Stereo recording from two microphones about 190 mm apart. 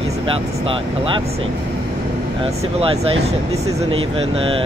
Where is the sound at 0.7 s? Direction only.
30° right (ahead or behind).